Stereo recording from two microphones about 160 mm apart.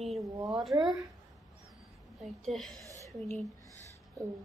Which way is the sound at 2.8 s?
20° right (ahead or behind).